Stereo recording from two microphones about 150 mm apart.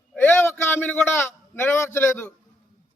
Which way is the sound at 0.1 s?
15° left (ahead or behind).